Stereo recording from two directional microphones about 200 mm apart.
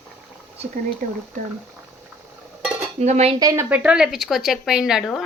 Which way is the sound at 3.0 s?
30° right (ahead or behind).